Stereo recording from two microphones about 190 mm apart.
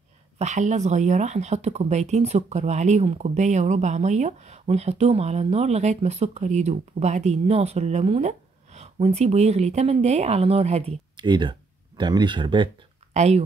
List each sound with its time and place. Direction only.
0.4 s speech: 35° right (ahead or behind)
13.1 s speech: 35° right (ahead or behind)